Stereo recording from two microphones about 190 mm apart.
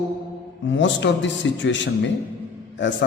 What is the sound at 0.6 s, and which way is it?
A man's voice, 75° left (ahead or behind).